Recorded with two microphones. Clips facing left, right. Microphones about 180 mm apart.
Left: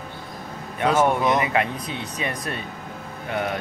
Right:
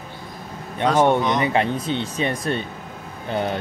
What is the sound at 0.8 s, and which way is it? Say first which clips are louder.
Speech: right 2 dB; 5° left (ahead or behind).